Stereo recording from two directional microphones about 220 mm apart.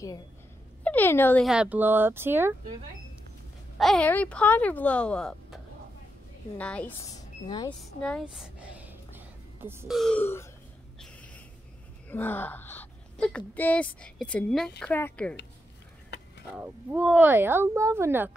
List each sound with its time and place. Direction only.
0.8 s speech: 10° left (ahead or behind)
1.5 s speech: 5° right (ahead or behind)
3.7 s speech: centre (ahead or behind)
6.6 s speech: 5° left (ahead or behind)
7.4 s speech: 20° left (ahead or behind)
7.8 s a sound: centre (ahead or behind)
9.9 s speech: 5° left (ahead or behind)
12.1 s speech: 10° left (ahead or behind)
16.5 s speech: 10° right (ahead or behind)